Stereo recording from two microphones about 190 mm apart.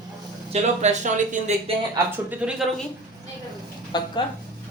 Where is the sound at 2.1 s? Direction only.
5° right (ahead or behind).